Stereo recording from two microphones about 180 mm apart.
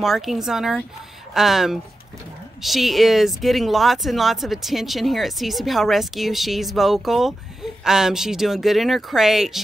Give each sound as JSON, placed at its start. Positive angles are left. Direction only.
{"t": 0.0, "sound": "speech", "side_deg": 0}